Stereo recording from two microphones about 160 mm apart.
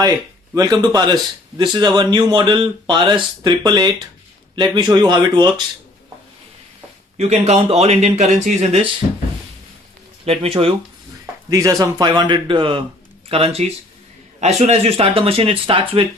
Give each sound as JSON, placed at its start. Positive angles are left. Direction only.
{"t": 0.5, "sound": "a man's voice", "side_deg": -25}
{"t": 7.2, "sound": "speech", "side_deg": -40}
{"t": 10.2, "sound": "speech", "side_deg": -35}
{"t": 11.4, "sound": "a man's voice", "side_deg": -25}